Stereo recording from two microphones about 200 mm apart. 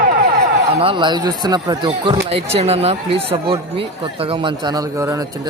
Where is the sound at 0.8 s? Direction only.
25° right (ahead or behind).